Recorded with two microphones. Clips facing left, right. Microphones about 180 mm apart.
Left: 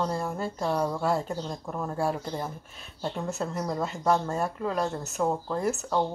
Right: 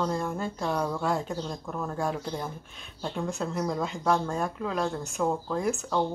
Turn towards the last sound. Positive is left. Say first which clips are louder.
# even
turn(degrees=5)  # may be behind; listen again after turning